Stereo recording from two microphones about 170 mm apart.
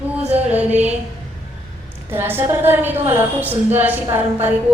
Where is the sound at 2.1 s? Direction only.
15° right (ahead or behind).